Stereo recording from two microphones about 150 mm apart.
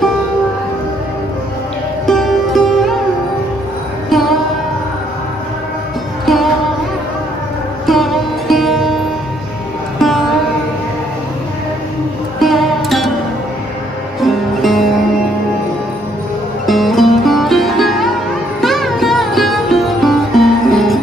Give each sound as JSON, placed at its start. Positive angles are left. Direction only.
{"t": 2.0, "sound": "music", "side_deg": 0}
{"t": 4.1, "sound": "music", "side_deg": 0}
{"t": 6.2, "sound": "music", "side_deg": 0}
{"t": 7.8, "sound": "music", "side_deg": 0}
{"t": 12.4, "sound": "music", "side_deg": 0}
{"t": 14.2, "sound": "music", "side_deg": 0}
{"t": 16.6, "sound": "music", "side_deg": 0}